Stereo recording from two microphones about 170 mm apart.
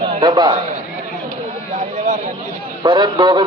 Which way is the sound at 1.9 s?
45° right (ahead or behind).